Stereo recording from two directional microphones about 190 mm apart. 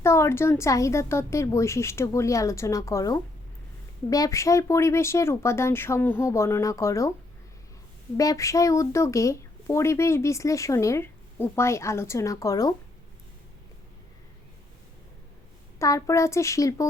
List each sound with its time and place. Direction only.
0.0 s speech: 15° left (ahead or behind)
8.1 s speech: 20° left (ahead or behind)
15.8 s speech: 15° left (ahead or behind)